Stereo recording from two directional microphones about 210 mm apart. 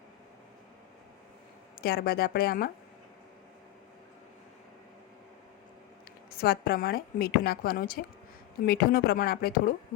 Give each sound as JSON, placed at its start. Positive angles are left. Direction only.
{"t": 1.8, "sound": "a woman's voice", "side_deg": 45}
{"t": 6.3, "sound": "a woman's voice", "side_deg": 45}